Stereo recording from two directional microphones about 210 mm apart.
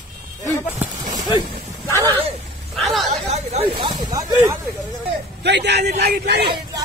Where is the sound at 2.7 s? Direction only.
Centre (ahead or behind).